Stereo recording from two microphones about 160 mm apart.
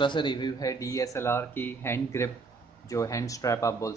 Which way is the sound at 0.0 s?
30° left (ahead or behind).